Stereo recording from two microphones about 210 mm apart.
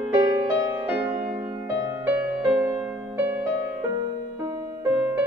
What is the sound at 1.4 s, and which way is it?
Music, 10° right (ahead or behind).